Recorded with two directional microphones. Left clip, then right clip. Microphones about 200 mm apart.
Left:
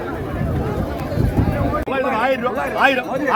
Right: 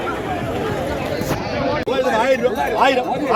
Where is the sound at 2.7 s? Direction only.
Centre (ahead or behind).